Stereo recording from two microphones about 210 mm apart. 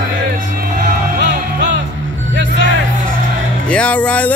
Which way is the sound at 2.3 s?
60° right (ahead or behind).